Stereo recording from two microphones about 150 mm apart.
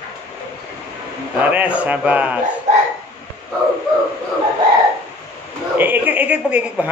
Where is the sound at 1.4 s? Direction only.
10° right (ahead or behind).